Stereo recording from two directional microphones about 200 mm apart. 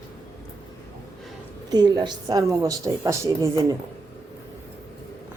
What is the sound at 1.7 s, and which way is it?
A woman's voice, 20° right (ahead or behind).